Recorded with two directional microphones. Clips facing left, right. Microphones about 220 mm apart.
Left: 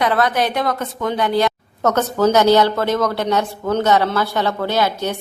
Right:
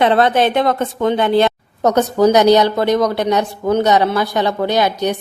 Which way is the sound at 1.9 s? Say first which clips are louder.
Right 3 dB; 15° right (ahead or behind).